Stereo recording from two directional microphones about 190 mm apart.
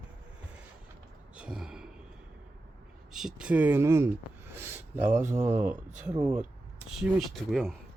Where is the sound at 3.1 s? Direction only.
Centre (ahead or behind).